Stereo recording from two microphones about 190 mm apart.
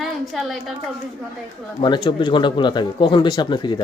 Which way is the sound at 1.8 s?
25° left (ahead or behind).